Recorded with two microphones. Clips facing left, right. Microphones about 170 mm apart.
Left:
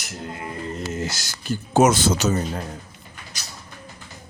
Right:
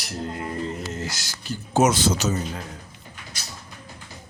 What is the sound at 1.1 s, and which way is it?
Speech, 50° left (ahead or behind).